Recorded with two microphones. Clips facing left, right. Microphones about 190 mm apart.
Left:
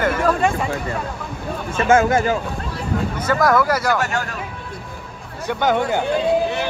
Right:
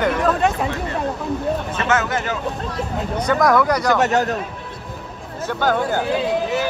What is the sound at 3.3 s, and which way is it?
Speech, centre (ahead or behind).